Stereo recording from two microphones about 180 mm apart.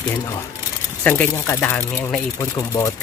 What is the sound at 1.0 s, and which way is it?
Speech, 10° left (ahead or behind).